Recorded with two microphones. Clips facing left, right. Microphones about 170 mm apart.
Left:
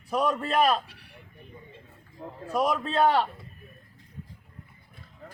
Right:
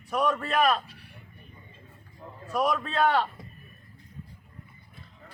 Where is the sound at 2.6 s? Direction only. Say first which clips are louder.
Left 1 dB; 30° left (ahead or behind).